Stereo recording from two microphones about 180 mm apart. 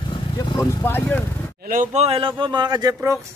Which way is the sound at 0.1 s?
25° left (ahead or behind).